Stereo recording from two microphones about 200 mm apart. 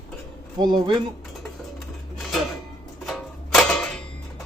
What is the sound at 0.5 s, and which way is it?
Speech, 20° right (ahead or behind).